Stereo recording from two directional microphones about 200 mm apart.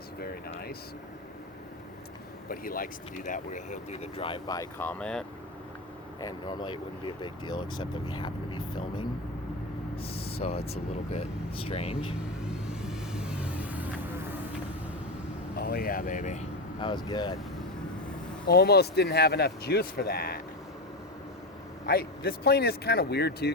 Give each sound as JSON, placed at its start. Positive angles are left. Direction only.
{"t": 0.2, "sound": "air conditioning", "side_deg": 50}
{"t": 2.5, "sound": "speech", "side_deg": 45}
{"t": 6.2, "sound": "speech", "side_deg": 20}
{"t": 10.4, "sound": "speech", "side_deg": 35}
{"t": 11.6, "sound": "speech", "side_deg": 30}
{"t": 12.4, "sound": "vehicle", "side_deg": -5}
{"t": 15.5, "sound": "speech", "side_deg": 50}
{"t": 16.8, "sound": "speech", "side_deg": 20}
{"t": 18.4, "sound": "speech", "side_deg": 55}
{"t": 21.8, "sound": "speech", "side_deg": 50}